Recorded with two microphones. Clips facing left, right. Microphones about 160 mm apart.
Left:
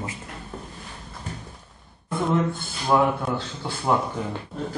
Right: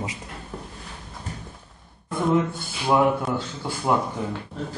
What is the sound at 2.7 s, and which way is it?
A man's voice, 5° right (ahead or behind).